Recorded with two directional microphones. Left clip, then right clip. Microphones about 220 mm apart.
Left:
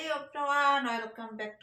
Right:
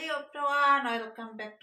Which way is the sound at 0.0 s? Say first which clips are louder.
Right 1 dB; centre (ahead or behind).